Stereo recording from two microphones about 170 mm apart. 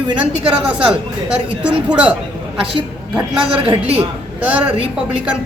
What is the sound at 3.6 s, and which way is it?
Speech, 30° right (ahead or behind).